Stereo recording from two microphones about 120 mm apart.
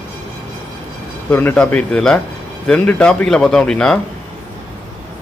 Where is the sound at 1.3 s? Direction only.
15° left (ahead or behind).